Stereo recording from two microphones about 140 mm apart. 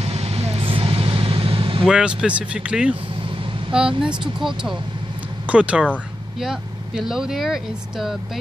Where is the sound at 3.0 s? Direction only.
40° right (ahead or behind).